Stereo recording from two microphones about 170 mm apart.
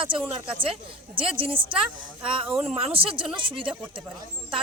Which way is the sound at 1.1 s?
30° right (ahead or behind).